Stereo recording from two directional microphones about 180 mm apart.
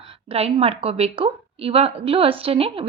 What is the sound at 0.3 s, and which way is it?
A woman's voice, 35° right (ahead or behind).